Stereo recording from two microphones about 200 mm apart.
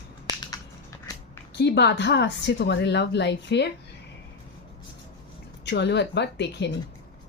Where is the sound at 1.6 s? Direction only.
60° left (ahead or behind).